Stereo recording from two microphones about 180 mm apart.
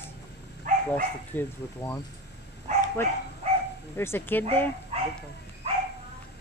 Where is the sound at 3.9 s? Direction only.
10° left (ahead or behind).